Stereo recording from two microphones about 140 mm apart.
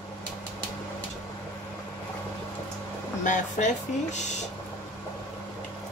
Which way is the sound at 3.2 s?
60° left (ahead or behind).